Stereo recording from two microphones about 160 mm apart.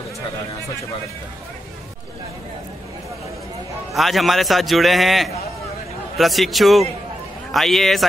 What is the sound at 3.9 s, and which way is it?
Speech, centre (ahead or behind).